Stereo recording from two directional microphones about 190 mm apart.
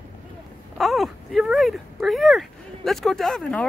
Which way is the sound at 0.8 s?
Centre (ahead or behind).